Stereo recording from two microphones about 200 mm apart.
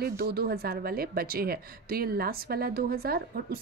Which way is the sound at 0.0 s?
50° right (ahead or behind).